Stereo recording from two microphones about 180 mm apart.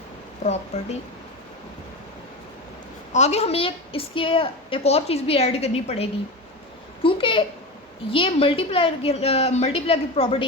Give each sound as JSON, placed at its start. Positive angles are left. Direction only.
{"t": 0.4, "sound": "a woman's voice", "side_deg": 35}
{"t": 3.1, "sound": "a woman's voice", "side_deg": 40}
{"t": 7.0, "sound": "a sound", "side_deg": 30}
{"t": 8.1, "sound": "a woman's voice", "side_deg": 30}